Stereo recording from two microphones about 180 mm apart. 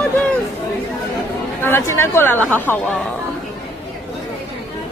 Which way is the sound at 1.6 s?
15° left (ahead or behind).